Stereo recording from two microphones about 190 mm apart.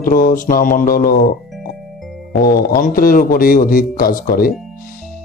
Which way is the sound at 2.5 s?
50° left (ahead or behind).